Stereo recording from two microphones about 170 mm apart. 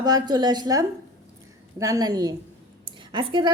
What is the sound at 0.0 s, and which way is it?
A woman's voice, 25° right (ahead or behind).